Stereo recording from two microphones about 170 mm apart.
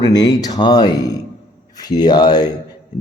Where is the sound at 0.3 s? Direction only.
20° left (ahead or behind).